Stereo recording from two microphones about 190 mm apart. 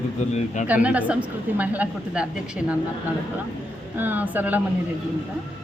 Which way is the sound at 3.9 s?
10° right (ahead or behind).